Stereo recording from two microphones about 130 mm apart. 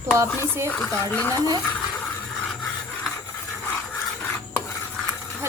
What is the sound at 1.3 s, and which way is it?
Speech, 30° right (ahead or behind).